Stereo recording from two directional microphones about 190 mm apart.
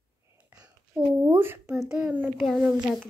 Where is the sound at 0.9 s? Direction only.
10° right (ahead or behind).